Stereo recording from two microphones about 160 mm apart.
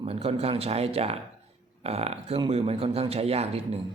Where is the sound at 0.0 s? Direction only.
40° right (ahead or behind).